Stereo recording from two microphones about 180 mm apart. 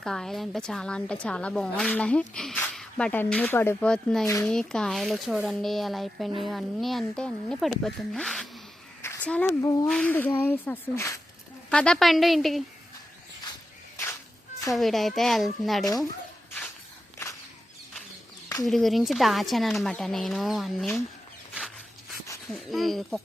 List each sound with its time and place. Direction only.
0.0 s a woman's voice: centre (ahead or behind); by 9.8 s 20° left (ahead or behind)
9.8 s a woman's voice: 5° left (ahead or behind)
13.9 s a sound: 15° left (ahead or behind)
14.7 s a woman's voice: centre (ahead or behind)
18.6 s a woman's voice: centre (ahead or behind)
22.5 s a woman's voice: centre (ahead or behind)